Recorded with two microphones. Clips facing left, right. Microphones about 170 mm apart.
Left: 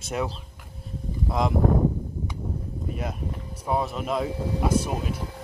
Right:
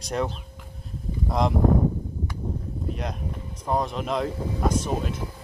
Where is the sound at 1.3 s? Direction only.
Centre (ahead or behind).